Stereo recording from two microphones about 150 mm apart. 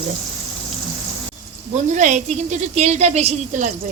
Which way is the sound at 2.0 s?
55° right (ahead or behind).